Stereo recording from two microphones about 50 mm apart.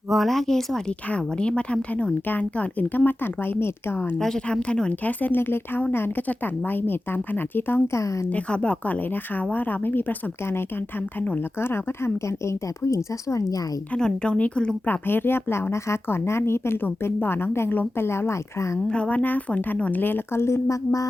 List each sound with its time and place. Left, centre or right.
0.1 s speech: centre
1.1 s speech: left
2.2 s a woman's voice: left
4.7 s a woman's voice: left
7.9 s speech: left
8.3 s speech: left
9.0 s a woman's voice: left
11.6 s a woman's voice: left
13.9 s speech: centre
14.8 s a woman's voice: left
18.9 s a woman's voice: left